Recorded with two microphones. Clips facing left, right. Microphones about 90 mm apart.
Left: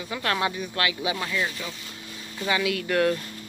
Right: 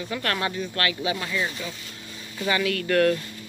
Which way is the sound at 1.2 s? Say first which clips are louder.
Even; 5° right (ahead or behind).